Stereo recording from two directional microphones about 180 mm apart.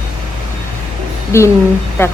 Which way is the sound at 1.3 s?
15° left (ahead or behind).